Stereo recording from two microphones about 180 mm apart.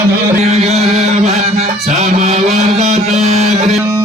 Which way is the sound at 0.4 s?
35° right (ahead or behind).